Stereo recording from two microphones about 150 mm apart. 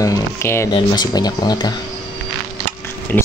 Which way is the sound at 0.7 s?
30° left (ahead or behind).